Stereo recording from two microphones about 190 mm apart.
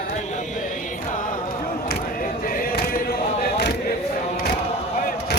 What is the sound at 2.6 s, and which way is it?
Choir, 50° left (ahead or behind).